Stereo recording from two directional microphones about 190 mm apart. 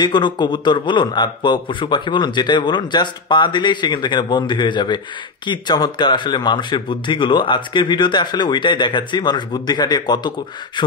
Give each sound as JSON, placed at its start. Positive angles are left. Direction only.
{"t": 0.0, "sound": "a man's voice", "side_deg": 25}